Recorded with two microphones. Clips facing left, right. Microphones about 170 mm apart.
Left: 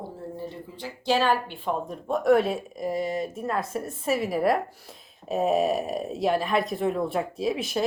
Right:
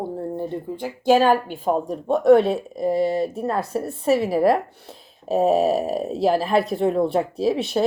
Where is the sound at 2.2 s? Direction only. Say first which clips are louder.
Right 6 dB; 25° right (ahead or behind).